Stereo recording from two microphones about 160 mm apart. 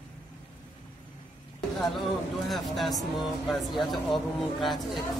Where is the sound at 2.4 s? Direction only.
Centre (ahead or behind).